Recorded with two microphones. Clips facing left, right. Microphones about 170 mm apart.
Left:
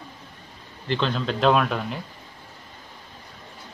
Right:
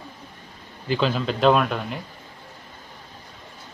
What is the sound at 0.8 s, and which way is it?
Speech, 5° right (ahead or behind).